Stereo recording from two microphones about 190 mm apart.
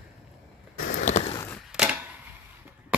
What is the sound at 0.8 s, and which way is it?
Boat, 45° left (ahead or behind).